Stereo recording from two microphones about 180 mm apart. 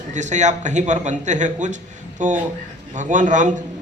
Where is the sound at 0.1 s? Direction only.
40° right (ahead or behind).